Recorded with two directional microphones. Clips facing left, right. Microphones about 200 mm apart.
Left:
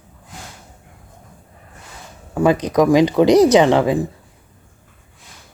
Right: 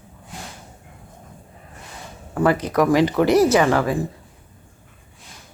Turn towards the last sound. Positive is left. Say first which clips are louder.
# left 4 dB
turn(degrees=20)  # may be behind; listen again after turning